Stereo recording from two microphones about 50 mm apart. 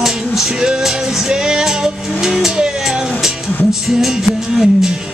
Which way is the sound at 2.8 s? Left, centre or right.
Centre.